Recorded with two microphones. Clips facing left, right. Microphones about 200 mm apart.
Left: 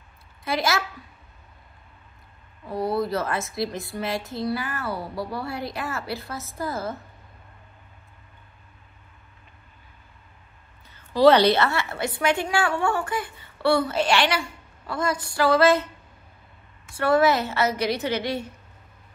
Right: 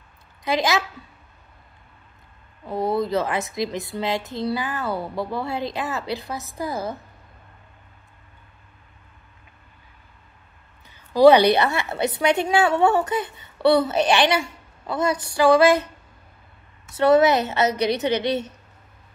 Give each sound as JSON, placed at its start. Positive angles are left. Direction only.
{"t": 0.4, "sound": "a woman's voice", "side_deg": -20}
{"t": 2.7, "sound": "a woman's voice", "side_deg": -20}
{"t": 4.9, "sound": "a woman's voice", "side_deg": -50}
{"t": 5.3, "sound": "a woman's voice", "side_deg": -20}
{"t": 10.9, "sound": "a woman's voice", "side_deg": -15}
{"t": 16.9, "sound": "a woman's voice", "side_deg": -20}